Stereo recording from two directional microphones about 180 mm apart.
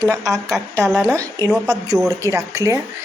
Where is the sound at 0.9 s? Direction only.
5° right (ahead or behind).